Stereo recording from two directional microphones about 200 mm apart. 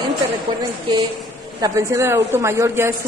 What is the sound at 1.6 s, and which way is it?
Speech, 15° right (ahead or behind).